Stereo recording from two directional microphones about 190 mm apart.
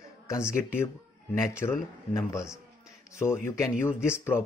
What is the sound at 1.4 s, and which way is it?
Speech, 15° left (ahead or behind).